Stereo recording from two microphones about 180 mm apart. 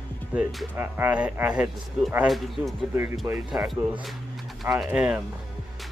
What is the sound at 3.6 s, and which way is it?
Speech, centre (ahead or behind).